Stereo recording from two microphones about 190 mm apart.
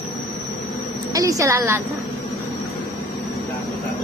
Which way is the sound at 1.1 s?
20° right (ahead or behind).